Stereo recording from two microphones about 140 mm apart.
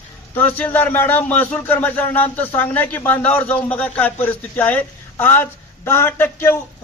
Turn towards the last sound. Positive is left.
turn(degrees=15)  # may be behind; listen again after turning